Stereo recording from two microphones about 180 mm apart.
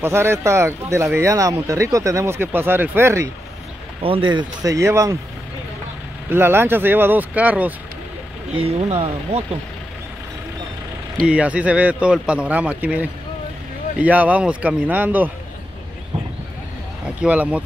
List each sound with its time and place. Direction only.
0.0 s speech: 15° right (ahead or behind)
4.0 s speech: 30° right (ahead or behind)
6.3 s speech: 10° right (ahead or behind)
8.5 s speech: 35° right (ahead or behind)
11.2 s speech: 5° right (ahead or behind)
17.2 s speech: 5° right (ahead or behind)